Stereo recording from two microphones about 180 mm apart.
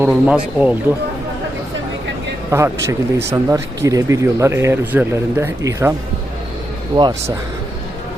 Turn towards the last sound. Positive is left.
turn(degrees=-20)  # may be behind; listen again after turning